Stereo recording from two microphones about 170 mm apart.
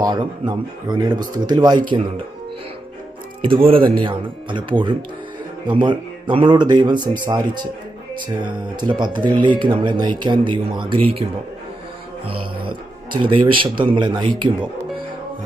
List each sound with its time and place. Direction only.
0.0 s speech: 25° right (ahead or behind)
3.4 s speech: 30° right (ahead or behind)
12.3 s music: 30° right (ahead or behind)
13.2 s speech: 30° right (ahead or behind)